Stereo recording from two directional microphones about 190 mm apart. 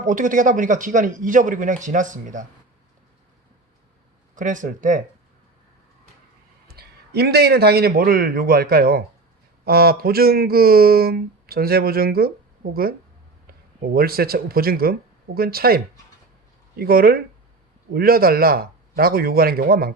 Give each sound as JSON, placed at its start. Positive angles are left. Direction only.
{"t": 0.0, "sound": "speech", "side_deg": -45}
{"t": 4.4, "sound": "speech", "side_deg": -45}
{"t": 6.7, "sound": "a man's voice", "side_deg": -55}